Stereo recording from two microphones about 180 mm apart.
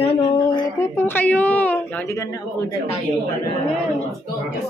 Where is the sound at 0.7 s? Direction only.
10° left (ahead or behind).